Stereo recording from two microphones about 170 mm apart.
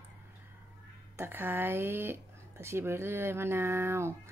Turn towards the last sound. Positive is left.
turn(degrees=-15)  # may be behind; listen again after turning